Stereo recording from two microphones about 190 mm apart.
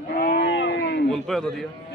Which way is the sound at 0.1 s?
50° left (ahead or behind).